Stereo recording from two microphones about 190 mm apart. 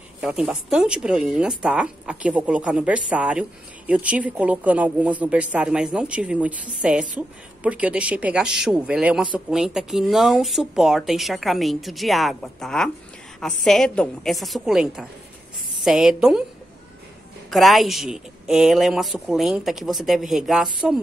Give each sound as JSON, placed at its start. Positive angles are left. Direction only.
{"t": 0.2, "sound": "a woman's voice", "side_deg": -5}
{"t": 17.5, "sound": "speech", "side_deg": 0}